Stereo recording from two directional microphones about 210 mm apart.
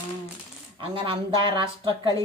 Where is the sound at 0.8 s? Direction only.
25° right (ahead or behind).